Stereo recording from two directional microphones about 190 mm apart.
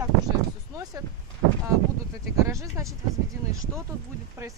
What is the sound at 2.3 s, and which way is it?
Speech, 15° right (ahead or behind).